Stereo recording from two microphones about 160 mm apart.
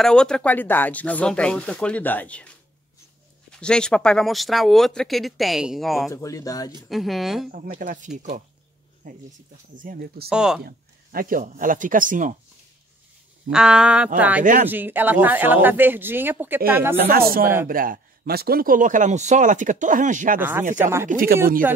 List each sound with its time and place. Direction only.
0.0 s speech: 5° left (ahead or behind)
3.5 s speech: 5° left (ahead or behind)
6.1 s speech: 20° left (ahead or behind)
6.9 s speech: centre (ahead or behind)
7.5 s speech: 55° right (ahead or behind)
9.8 s speech: 70° right (ahead or behind)
10.3 s speech: 5° right (ahead or behind)
10.6 s speech: 65° right (ahead or behind)
13.5 s speech: 5° right (ahead or behind)
16.9 s speech: 90° right
17.6 s a man's voice: 60° right (ahead or behind)
20.3 s speech: 15° right (ahead or behind)
21.1 s speech: 60° right (ahead or behind)